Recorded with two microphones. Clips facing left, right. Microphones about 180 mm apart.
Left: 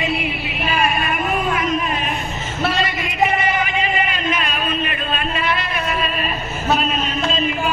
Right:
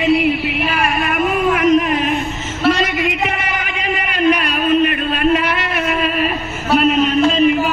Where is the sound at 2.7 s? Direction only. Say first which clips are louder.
Right 9 dB; 80° right.